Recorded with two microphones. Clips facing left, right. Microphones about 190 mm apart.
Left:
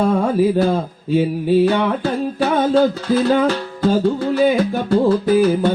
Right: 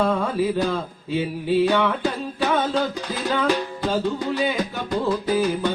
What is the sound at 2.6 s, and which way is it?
Music, 45° left (ahead or behind).